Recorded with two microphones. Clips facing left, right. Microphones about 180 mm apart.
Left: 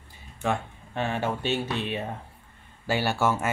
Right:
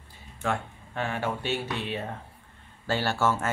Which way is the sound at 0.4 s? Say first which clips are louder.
Left 2 dB; 20° left (ahead or behind).